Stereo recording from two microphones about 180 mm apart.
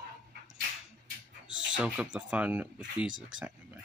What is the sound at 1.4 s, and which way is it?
Speech, 5° right (ahead or behind).